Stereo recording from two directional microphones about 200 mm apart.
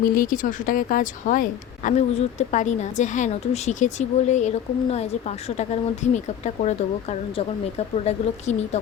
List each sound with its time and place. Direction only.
0.1 s speech: 45° left (ahead or behind)